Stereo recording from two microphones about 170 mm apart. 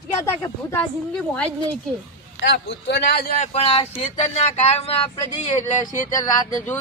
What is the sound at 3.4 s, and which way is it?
Speech, 40° left (ahead or behind).